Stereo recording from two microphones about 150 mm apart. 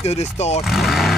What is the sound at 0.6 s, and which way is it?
Speech, centre (ahead or behind).